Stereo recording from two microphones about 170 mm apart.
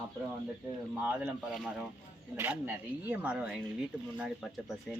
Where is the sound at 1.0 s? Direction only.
10° right (ahead or behind).